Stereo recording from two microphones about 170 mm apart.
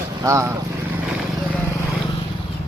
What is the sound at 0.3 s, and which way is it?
Speech, 15° right (ahead or behind).